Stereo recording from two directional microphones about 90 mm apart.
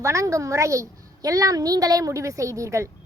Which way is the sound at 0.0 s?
35° right (ahead or behind).